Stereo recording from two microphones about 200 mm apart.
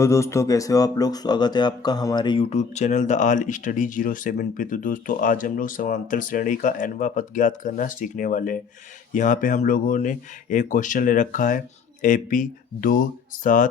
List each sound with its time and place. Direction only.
0.0 s speech: 15° left (ahead or behind); by 13.7 s 40° left (ahead or behind)